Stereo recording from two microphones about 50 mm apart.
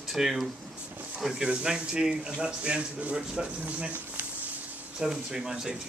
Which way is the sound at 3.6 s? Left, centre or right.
Right.